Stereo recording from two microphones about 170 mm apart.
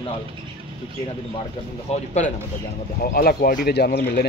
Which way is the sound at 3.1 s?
60° left (ahead or behind).